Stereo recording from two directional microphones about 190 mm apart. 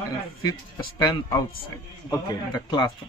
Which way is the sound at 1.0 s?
20° left (ahead or behind).